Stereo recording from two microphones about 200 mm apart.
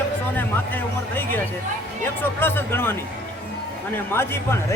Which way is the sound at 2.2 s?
10° left (ahead or behind).